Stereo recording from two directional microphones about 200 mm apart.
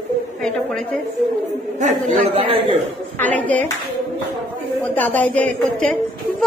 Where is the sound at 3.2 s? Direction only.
10° left (ahead or behind).